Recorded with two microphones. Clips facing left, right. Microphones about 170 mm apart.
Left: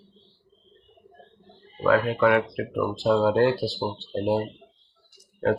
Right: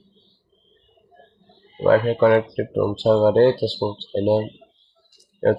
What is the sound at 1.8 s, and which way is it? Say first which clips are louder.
Speech: right 5 dB; 30° right (ahead or behind).